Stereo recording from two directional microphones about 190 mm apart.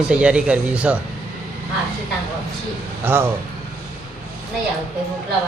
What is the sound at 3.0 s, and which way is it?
Speech, 10° right (ahead or behind).